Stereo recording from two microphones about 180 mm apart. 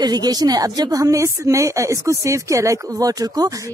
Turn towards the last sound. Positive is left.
turn(degrees=-20)  # may be behind; listen again after turning